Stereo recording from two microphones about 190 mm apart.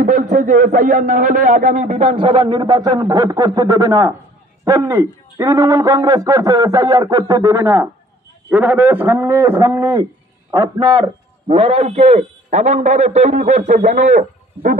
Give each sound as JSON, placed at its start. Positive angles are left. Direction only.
{"t": 0.0, "sound": "a man's voice", "side_deg": -45}